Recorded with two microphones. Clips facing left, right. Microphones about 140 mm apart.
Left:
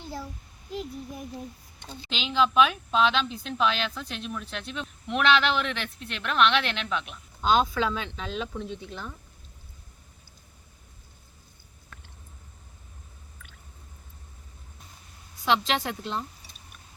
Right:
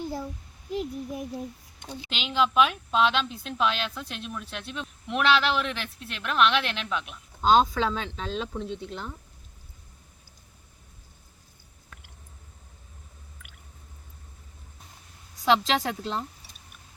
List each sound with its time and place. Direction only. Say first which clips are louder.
0.0 s a sound: right 5 dB; 15° right (ahead or behind)
0.7 s a woman's voice: right 4 dB; 10° right (ahead or behind)
7.5 s speech: right 2 dB; 35° right (ahead or behind)
15.4 s speech: right 2 dB; 35° right (ahead or behind)